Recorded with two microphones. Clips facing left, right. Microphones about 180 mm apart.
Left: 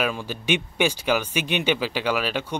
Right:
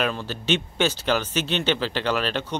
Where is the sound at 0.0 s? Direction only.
10° left (ahead or behind).